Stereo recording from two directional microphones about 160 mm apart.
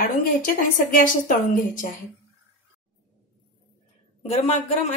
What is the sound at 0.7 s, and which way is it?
A woman's voice, 55° left (ahead or behind).